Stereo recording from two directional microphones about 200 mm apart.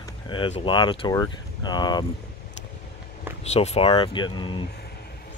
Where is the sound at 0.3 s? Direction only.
25° left (ahead or behind).